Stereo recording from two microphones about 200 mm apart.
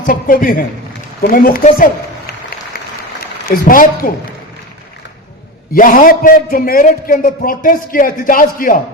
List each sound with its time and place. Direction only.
0.0 s a man's voice: 45° left (ahead or behind)
1.2 s a sound: 45° left (ahead or behind)
3.4 s a man's voice: 45° left (ahead or behind)
5.7 s a man's voice: 45° left (ahead or behind)